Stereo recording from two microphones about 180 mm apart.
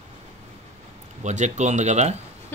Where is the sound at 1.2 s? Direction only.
40° right (ahead or behind).